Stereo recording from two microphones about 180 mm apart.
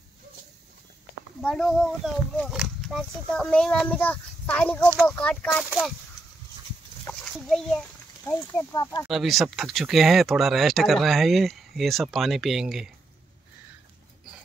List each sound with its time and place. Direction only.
1.4 s speech: 5° left (ahead or behind)
7.2 s a sound: centre (ahead or behind)
8.3 s speech: 10° left (ahead or behind)
9.0 s speech: centre (ahead or behind)